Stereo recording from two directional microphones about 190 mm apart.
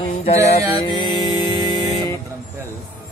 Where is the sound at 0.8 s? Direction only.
25° left (ahead or behind).